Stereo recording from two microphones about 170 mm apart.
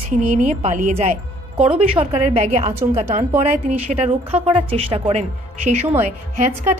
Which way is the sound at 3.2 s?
40° right (ahead or behind).